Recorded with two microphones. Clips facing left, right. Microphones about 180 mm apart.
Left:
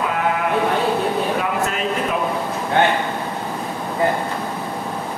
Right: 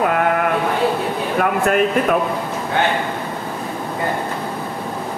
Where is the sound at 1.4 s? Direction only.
55° right (ahead or behind).